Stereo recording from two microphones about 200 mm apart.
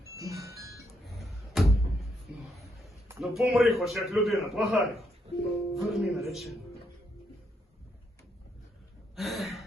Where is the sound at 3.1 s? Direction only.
Centre (ahead or behind).